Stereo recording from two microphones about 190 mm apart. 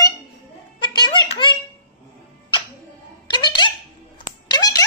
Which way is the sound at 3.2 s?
25° left (ahead or behind).